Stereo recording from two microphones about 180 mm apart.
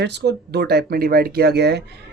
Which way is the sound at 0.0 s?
70° right (ahead or behind).